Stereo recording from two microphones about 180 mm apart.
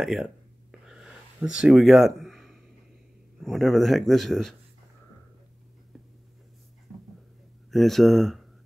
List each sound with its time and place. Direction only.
0.0 s a sound: 5° right (ahead or behind)
3.4 s speech: centre (ahead or behind)
7.7 s speech: centre (ahead or behind)